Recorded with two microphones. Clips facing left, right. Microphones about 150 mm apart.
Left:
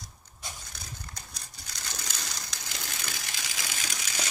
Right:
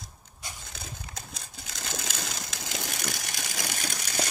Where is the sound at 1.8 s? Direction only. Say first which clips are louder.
Right 5 dB; 75° right (ahead or behind).